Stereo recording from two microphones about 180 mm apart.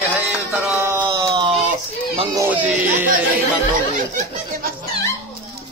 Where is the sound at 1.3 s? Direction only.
25° right (ahead or behind).